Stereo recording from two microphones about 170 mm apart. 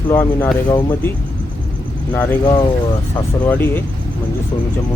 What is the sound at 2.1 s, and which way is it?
Speech, 15° left (ahead or behind).